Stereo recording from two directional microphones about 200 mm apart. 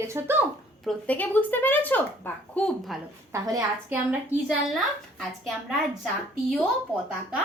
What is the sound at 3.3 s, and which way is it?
Speech, 15° right (ahead or behind).